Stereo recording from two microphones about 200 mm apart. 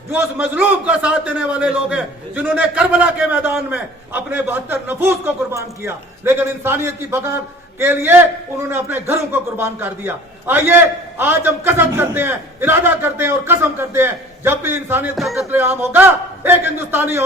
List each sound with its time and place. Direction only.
0.1 s a man's voice: 10° right (ahead or behind)
15.1 s a man's voice: centre (ahead or behind)